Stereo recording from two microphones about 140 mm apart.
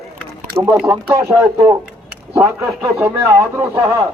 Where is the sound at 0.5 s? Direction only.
25° right (ahead or behind).